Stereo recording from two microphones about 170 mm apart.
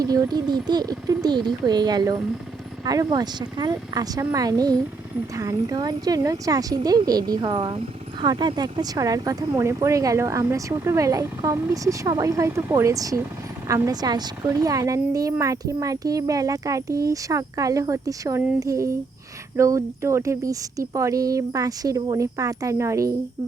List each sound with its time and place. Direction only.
0.0 s a woman's voice: 20° right (ahead or behind)